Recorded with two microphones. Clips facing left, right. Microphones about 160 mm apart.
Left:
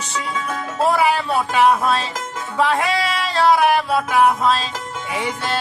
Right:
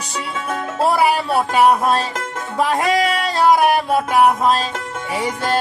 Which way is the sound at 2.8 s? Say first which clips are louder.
Right 4 dB; 40° right (ahead or behind).